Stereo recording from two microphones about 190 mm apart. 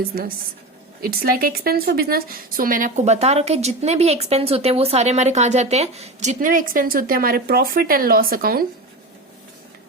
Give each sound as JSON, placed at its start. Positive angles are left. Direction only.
{"t": 1.0, "sound": "a woman's voice", "side_deg": -50}